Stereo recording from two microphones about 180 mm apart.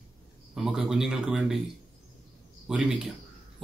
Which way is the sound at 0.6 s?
5° right (ahead or behind).